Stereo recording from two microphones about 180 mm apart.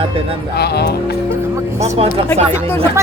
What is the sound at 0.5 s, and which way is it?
Speech, 65° left (ahead or behind).